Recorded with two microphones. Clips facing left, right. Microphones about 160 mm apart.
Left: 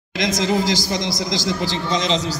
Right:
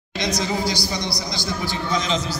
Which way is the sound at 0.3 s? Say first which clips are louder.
Left 4 dB; 90° left.